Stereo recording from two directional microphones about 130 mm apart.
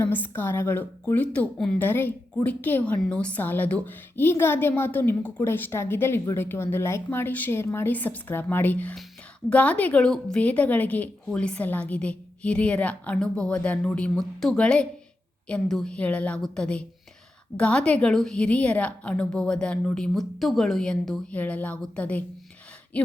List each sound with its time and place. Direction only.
0.0 s a woman's voice: 15° left (ahead or behind)